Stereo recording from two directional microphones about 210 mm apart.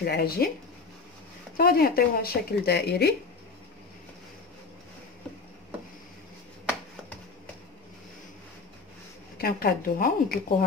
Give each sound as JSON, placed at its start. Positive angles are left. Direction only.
{"t": 0.0, "sound": "speech", "side_deg": 45}
{"t": 1.6, "sound": "speech", "side_deg": 45}
{"t": 9.4, "sound": "speech", "side_deg": 45}